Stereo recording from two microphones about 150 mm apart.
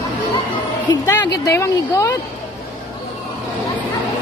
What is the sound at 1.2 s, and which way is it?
Speech, 25° left (ahead or behind).